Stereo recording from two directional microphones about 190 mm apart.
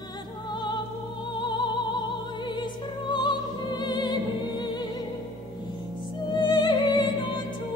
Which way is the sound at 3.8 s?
20° left (ahead or behind).